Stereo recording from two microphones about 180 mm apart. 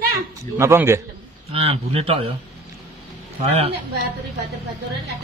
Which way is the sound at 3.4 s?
35° right (ahead or behind).